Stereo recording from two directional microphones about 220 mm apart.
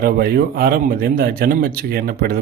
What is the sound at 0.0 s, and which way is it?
Speech, 45° right (ahead or behind).